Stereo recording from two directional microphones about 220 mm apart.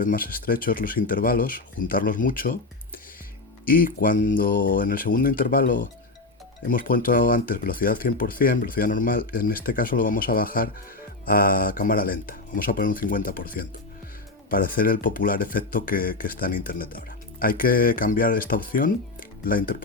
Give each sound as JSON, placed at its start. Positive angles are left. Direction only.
{"t": 0.0, "sound": "speech", "side_deg": 40}
{"t": 3.7, "sound": "speech", "side_deg": 40}